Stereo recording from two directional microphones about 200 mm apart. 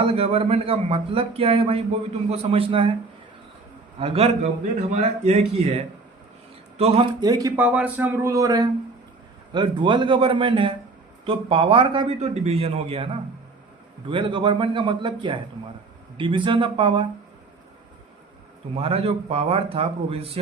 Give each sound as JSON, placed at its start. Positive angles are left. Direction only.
{"t": 0.1, "sound": "speech", "side_deg": -30}
{"t": 4.0, "sound": "speech", "side_deg": -30}
{"t": 7.3, "sound": "speech", "side_deg": -20}
{"t": 7.5, "sound": "speech", "side_deg": -5}
{"t": 14.1, "sound": "speech", "side_deg": -25}
{"t": 18.7, "sound": "speech", "side_deg": -30}